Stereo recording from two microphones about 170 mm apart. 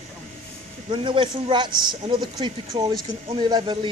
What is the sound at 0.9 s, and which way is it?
Speech, 30° right (ahead or behind).